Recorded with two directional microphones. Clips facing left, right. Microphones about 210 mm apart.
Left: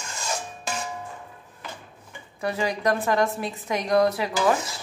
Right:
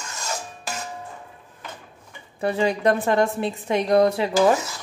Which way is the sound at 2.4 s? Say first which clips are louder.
Right 4 dB; 25° right (ahead or behind).